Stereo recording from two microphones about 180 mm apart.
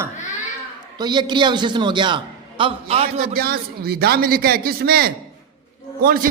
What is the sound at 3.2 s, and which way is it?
A man's voice, 55° right (ahead or behind).